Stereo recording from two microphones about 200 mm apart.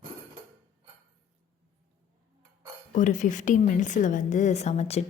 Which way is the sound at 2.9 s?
40° left (ahead or behind).